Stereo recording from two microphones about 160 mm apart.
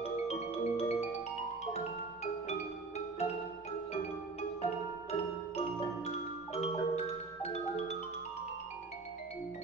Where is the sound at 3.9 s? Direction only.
40° left (ahead or behind).